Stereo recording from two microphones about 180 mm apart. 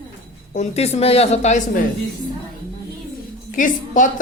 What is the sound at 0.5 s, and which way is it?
A woman's voice, 35° left (ahead or behind).